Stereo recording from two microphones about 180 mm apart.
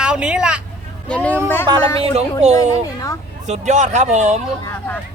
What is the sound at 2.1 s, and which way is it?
Speech, 35° right (ahead or behind).